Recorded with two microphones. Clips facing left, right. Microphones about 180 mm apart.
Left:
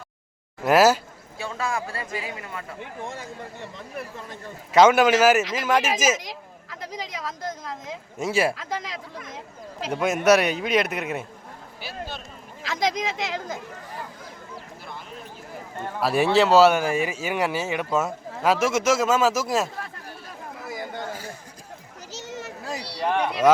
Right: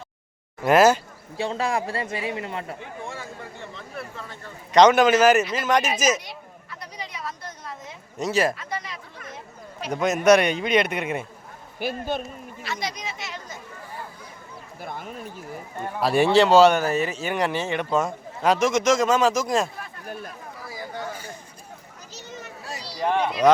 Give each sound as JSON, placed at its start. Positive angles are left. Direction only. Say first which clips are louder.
{"t": 0.6, "sound": "speech", "louder": "right 1 dB", "side_deg": 5}
{"t": 1.4, "sound": "speech", "louder": "right 4 dB", "side_deg": -30}
{"t": 4.7, "sound": "speech", "louder": "right 1 dB", "side_deg": 5}
{"t": 6.1, "sound": "speech", "louder": "left 1 dB", "side_deg": 90}
{"t": 8.2, "sound": "speech", "louder": "even", "side_deg": 10}
{"t": 8.5, "sound": "speech", "louder": "left 2 dB", "side_deg": 90}
{"t": 9.9, "sound": "speech", "louder": "right 1 dB", "side_deg": 5}
{"t": 11.8, "sound": "speech", "louder": "right 11 dB", "side_deg": -55}
{"t": 12.6, "sound": "speech", "louder": "left 7 dB", "side_deg": 90}
{"t": 14.8, "sound": "a sound", "louder": "right 5 dB", "side_deg": -50}
{"t": 16.0, "sound": "speech", "louder": "right 2 dB", "side_deg": 0}
{"t": 22.1, "sound": "a sound", "louder": "left 4 dB", "side_deg": 85}
{"t": 23.0, "sound": "a sound", "louder": "right 1 dB", "side_deg": -15}